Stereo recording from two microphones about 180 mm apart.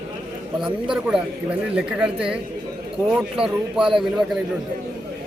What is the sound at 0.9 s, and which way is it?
Speech, 5° right (ahead or behind).